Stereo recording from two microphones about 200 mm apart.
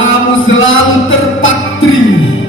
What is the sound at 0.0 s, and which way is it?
Music, 75° left (ahead or behind).